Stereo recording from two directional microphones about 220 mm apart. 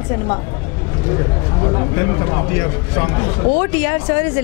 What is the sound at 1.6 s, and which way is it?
Speech, 20° left (ahead or behind).